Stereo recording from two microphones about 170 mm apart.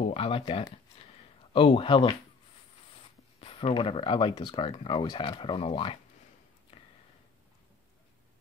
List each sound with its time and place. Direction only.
0.0 s speech: 35° left (ahead or behind)
3.3 s speech: 30° left (ahead or behind)
6.7 s a sound: 35° left (ahead or behind)